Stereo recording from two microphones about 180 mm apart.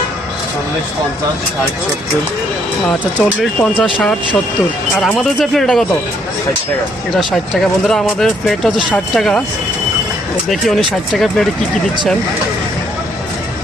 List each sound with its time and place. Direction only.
3.0 s speech: centre (ahead or behind)
7.1 s speech: centre (ahead or behind)
10.5 s speech: centre (ahead or behind)